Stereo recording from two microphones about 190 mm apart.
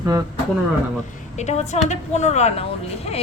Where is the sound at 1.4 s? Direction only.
35° left (ahead or behind).